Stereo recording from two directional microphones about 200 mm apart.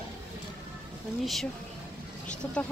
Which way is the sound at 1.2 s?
Centre (ahead or behind).